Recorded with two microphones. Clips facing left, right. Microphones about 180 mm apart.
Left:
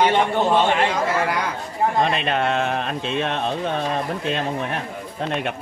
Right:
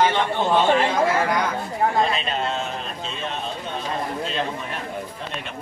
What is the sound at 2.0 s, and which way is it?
Speech, 60° left (ahead or behind).